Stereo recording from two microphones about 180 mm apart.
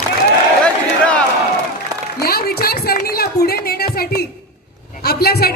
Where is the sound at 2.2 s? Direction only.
55° left (ahead or behind).